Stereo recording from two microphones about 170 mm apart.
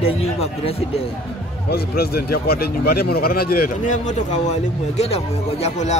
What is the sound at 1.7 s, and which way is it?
Speech, 70° left (ahead or behind).